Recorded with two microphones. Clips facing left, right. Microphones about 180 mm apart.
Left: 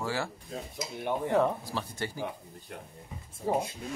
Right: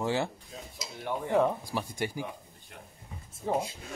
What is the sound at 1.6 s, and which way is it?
Speech, 15° right (ahead or behind).